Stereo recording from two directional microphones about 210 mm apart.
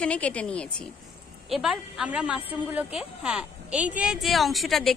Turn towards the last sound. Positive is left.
turn(degrees=0)  # may be behind; listen again after turning